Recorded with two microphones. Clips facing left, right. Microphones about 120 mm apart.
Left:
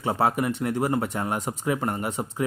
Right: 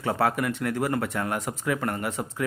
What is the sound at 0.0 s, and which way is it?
Speech, 20° left (ahead or behind).